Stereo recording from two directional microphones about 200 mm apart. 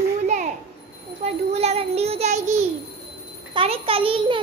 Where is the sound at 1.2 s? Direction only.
30° right (ahead or behind).